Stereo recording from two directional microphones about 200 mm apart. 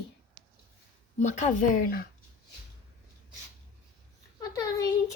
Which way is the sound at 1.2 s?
40° left (ahead or behind).